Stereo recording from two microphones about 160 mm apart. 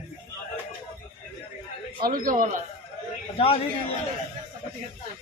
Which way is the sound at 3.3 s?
35° left (ahead or behind).